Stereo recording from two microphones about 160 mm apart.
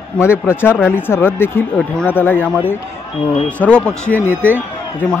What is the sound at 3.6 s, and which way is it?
Speech, 5° left (ahead or behind).